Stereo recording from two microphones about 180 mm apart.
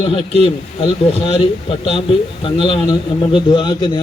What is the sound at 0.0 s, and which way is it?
Speech, 30° left (ahead or behind).